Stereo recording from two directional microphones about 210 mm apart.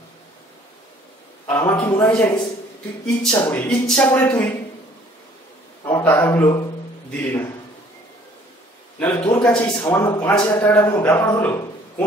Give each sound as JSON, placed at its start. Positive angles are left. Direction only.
{"t": 1.5, "sound": "speech", "side_deg": 10}
{"t": 5.9, "sound": "a man's voice", "side_deg": 10}
{"t": 9.3, "sound": "speech", "side_deg": 5}
{"t": 10.0, "sound": "speech", "side_deg": 20}
{"t": 10.3, "sound": "speech", "side_deg": 5}